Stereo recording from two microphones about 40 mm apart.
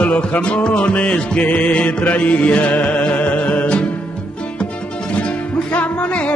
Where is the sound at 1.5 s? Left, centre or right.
Left.